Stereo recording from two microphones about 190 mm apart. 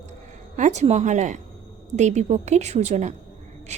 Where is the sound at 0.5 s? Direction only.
40° right (ahead or behind).